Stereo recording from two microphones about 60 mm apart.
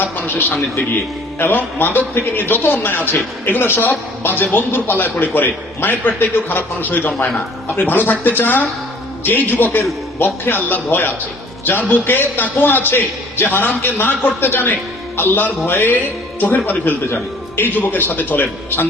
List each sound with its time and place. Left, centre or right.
0.0 s a man's voice: left